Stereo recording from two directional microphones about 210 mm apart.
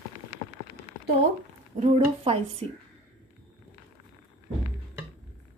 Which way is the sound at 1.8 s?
25° right (ahead or behind).